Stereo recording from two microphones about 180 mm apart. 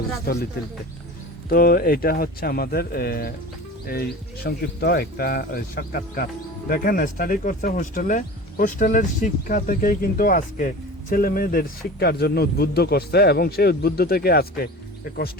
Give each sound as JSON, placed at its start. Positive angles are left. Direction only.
{"t": 1.5, "sound": "speech", "side_deg": 55}
{"t": 4.4, "sound": "speech", "side_deg": 65}